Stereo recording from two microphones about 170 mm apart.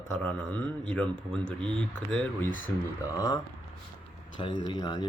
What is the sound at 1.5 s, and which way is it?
Speech, 30° right (ahead or behind).